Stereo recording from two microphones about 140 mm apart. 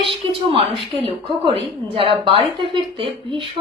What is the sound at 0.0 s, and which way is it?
Speech, 40° right (ahead or behind).